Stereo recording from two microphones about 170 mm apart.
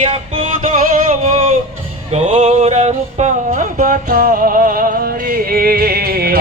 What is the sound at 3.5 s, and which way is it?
Music, 55° right (ahead or behind).